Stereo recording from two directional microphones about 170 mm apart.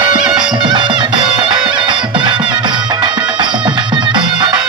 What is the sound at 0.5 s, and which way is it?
Music, 25° right (ahead or behind).